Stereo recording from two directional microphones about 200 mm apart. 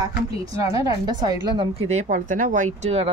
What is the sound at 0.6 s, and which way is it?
A woman's voice, 15° right (ahead or behind).